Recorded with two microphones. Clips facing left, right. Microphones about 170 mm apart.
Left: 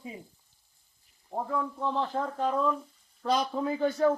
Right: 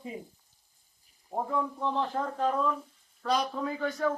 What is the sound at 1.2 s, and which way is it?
Speech, 10° right (ahead or behind).